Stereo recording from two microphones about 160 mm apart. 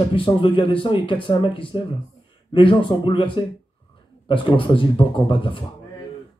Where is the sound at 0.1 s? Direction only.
35° left (ahead or behind).